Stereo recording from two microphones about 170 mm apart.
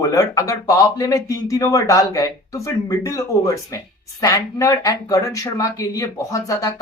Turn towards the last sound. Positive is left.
turn(degrees=20)  # may be behind; listen again after turning